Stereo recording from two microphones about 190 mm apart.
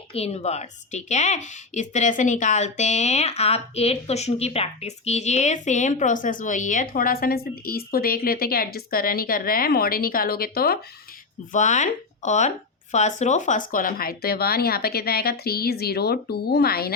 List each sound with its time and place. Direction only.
0.1 s a woman's voice: 35° left (ahead or behind); by 10.8 s 55° left (ahead or behind)
11.5 s speech: 40° left (ahead or behind)